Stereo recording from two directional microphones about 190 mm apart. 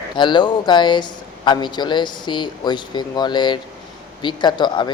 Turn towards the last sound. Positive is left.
turn(degrees=25)  # may be behind; listen again after turning